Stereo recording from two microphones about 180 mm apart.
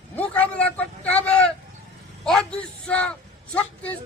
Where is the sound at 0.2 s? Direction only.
10° left (ahead or behind).